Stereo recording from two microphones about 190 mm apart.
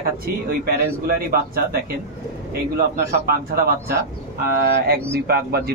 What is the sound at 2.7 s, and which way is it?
A man's voice, 55° right (ahead or behind).